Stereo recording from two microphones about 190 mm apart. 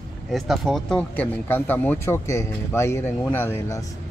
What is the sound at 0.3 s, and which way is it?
Speech, centre (ahead or behind).